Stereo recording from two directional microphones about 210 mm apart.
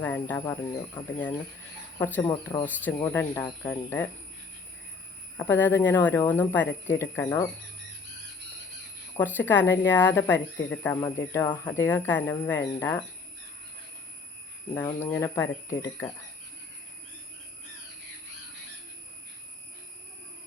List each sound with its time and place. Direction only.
0.0 s speech: 10° left (ahead or behind)
2.0 s speech: 10° left (ahead or behind)
2.2 s speech: 20° left (ahead or behind)
5.4 s speech: 10° left (ahead or behind)
9.1 s speech: 10° left (ahead or behind)
14.9 s speech: 10° left (ahead or behind)